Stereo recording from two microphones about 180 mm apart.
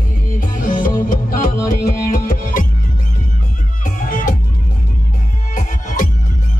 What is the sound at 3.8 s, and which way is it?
Music, 50° left (ahead or behind).